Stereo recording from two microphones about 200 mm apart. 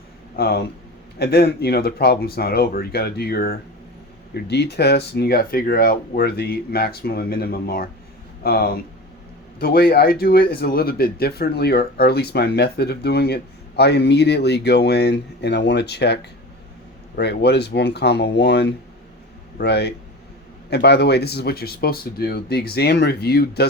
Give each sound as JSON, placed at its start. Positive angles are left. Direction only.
{"t": 0.3, "sound": "speech", "side_deg": 50}